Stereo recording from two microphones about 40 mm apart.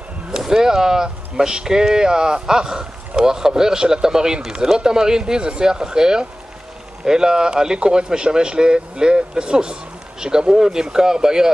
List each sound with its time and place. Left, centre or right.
0.5 s speech: centre